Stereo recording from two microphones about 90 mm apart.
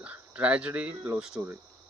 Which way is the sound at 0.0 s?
15° right (ahead or behind).